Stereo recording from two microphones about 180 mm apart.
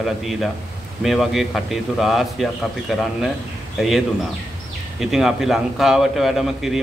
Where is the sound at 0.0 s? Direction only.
Centre (ahead or behind).